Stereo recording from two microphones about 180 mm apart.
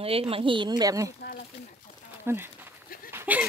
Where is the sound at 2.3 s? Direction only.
15° right (ahead or behind).